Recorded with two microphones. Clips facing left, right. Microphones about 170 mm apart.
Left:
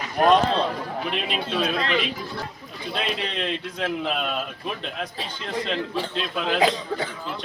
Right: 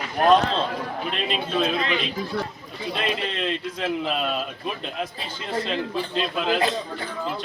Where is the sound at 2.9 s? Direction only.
Centre (ahead or behind).